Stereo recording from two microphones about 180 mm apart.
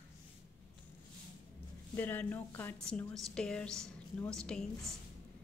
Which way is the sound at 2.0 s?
10° left (ahead or behind).